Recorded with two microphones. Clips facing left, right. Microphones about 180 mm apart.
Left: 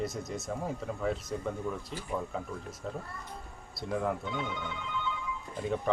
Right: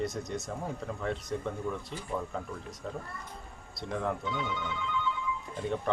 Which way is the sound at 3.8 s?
5° left (ahead or behind).